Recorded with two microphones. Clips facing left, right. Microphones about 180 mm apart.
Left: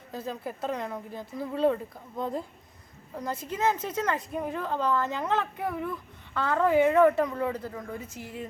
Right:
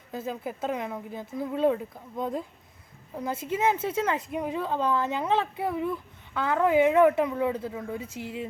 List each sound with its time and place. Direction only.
0.1 s speech: 5° right (ahead or behind)
3.2 s speech: 5° right (ahead or behind)
8.2 s speech: 25° right (ahead or behind)